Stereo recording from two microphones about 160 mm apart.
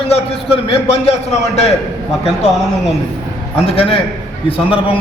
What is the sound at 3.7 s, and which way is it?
A man's voice, 35° left (ahead or behind).